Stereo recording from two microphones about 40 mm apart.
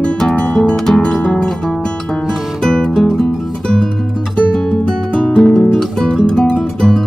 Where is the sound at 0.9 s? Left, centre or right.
Centre.